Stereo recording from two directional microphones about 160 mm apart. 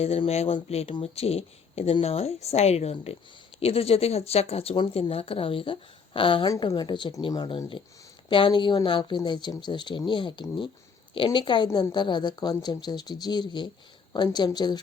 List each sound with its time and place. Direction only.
0.0 s speech: 40° left (ahead or behind)